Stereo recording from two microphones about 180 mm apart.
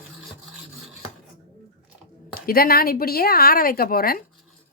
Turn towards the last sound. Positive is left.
turn(degrees=55)  # may be behind; listen again after turning